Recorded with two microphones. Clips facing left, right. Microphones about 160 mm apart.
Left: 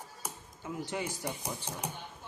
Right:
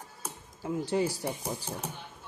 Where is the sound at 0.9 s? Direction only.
35° right (ahead or behind).